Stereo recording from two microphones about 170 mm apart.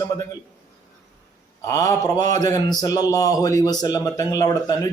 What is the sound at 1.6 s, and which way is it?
Speech, 20° left (ahead or behind).